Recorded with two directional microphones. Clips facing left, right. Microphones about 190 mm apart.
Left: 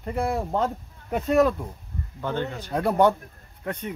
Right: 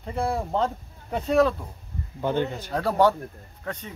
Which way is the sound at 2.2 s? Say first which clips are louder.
Right 3 dB; 15° right (ahead or behind).